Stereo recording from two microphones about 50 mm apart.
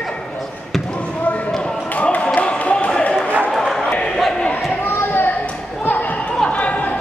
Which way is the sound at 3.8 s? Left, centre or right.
Left.